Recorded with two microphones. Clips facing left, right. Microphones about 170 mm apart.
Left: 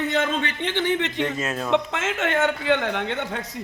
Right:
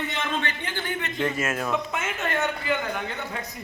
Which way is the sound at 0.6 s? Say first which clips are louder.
Left 8 dB; 85° left.